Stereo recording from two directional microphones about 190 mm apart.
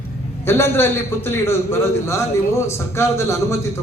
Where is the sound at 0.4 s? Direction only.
10° left (ahead or behind).